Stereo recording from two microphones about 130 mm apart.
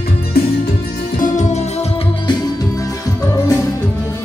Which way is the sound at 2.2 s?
35° left (ahead or behind).